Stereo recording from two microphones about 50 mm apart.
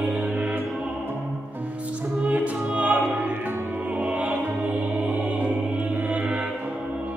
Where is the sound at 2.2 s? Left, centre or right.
Right.